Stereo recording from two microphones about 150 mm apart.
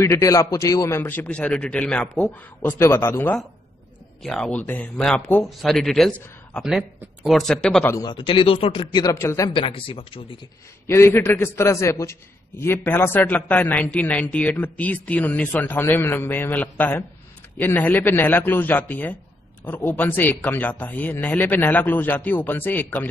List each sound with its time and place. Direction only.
0.0 s a man's voice: 20° left (ahead or behind)
4.2 s speech: 5° left (ahead or behind)
7.8 s speech: 20° left (ahead or behind)
8.1 s speech: 35° left (ahead or behind)
9.0 s speech: 20° left (ahead or behind)
9.5 s speech: 35° left (ahead or behind)
10.9 s a man's voice: 15° left (ahead or behind)